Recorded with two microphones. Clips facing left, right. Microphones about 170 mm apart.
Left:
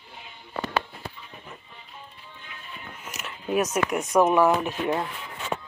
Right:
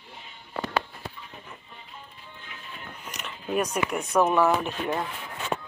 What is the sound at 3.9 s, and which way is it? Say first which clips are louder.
Speech: left 2 dB; 10° left (ahead or behind).